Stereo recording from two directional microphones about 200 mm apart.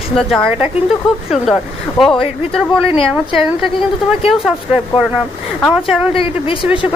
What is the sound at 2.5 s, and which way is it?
Speech, centre (ahead or behind).